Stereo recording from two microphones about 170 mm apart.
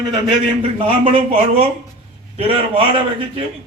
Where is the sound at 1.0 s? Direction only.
35° right (ahead or behind).